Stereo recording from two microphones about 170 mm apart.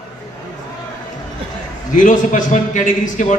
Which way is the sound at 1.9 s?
50° left (ahead or behind).